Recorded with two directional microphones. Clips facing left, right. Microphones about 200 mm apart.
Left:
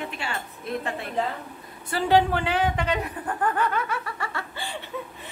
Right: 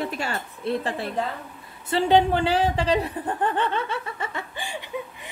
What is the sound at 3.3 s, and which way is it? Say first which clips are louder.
Laughter: even; 25° right (ahead or behind).